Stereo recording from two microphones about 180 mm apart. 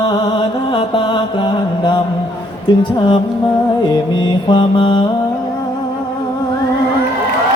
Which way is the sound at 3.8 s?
25° left (ahead or behind).